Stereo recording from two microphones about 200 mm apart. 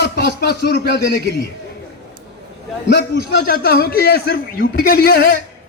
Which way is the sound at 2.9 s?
50° left (ahead or behind).